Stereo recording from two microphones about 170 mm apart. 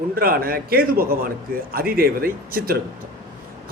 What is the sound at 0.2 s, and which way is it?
A man's voice, 60° right (ahead or behind).